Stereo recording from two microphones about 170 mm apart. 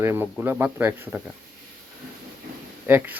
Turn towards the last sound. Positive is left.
turn(degrees=-10)  # may be behind; listen again after turning